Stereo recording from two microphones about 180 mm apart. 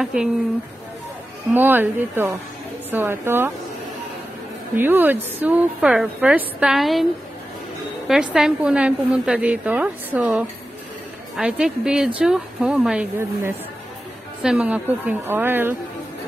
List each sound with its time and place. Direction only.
0.0 s a woman's voice: 5° right (ahead or behind)
1.5 s a woman's voice: 10° right (ahead or behind)
4.7 s a woman's voice: 10° right (ahead or behind)
8.1 s a woman's voice: 5° right (ahead or behind)